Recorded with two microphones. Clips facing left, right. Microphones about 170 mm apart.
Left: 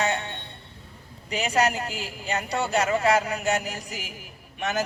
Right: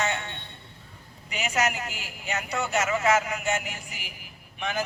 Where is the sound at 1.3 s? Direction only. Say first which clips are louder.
Left 4 dB; 35° left (ahead or behind).